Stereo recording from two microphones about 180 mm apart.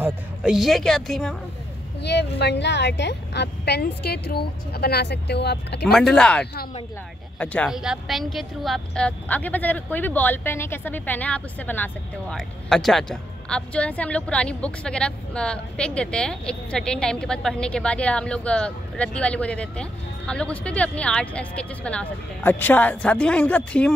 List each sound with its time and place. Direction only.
0.0 s a woman's voice: 5° right (ahead or behind)
2.0 s a woman's voice: 70° left (ahead or behind)
5.9 s a woman's voice: 5° left (ahead or behind)